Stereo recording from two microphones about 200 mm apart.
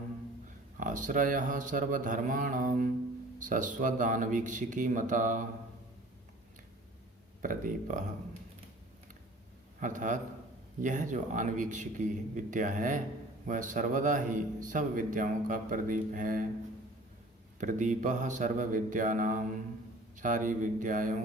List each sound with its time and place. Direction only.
0.8 s a man's voice: 40° right (ahead or behind)
7.4 s a man's voice: 40° right (ahead or behind)
9.8 s a man's voice: 40° right (ahead or behind)
17.6 s a man's voice: 40° right (ahead or behind)